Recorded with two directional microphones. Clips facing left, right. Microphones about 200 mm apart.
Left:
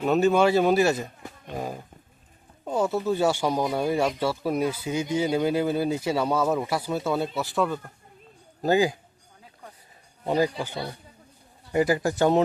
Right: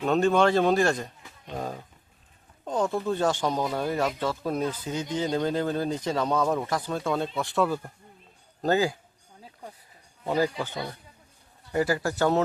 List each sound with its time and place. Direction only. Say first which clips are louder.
0.0 s speech: left 2 dB; 5° left (ahead or behind)
8.6 s speech: left 2 dB; 15° left (ahead or behind)
10.2 s speech: left 2 dB; 15° left (ahead or behind)
11.7 s speech: left 3 dB; 15° left (ahead or behind)